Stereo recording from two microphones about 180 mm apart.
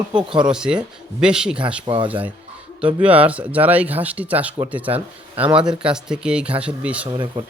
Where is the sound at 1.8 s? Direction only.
30° right (ahead or behind).